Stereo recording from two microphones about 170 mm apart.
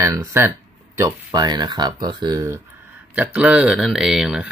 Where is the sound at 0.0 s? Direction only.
20° right (ahead or behind).